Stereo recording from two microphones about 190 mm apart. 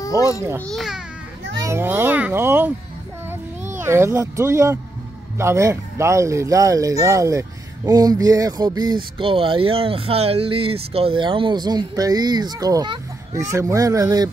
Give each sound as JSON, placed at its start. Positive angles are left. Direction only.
{"t": 0.0, "sound": "a child's voice", "side_deg": 15}
{"t": 0.4, "sound": "a child's voice", "side_deg": -15}
{"t": 0.7, "sound": "speech", "side_deg": 0}
{"t": 1.6, "sound": "a child's voice", "side_deg": -15}
{"t": 3.8, "sound": "a child's voice", "side_deg": -15}